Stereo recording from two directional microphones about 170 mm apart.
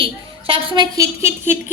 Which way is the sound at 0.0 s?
30° right (ahead or behind).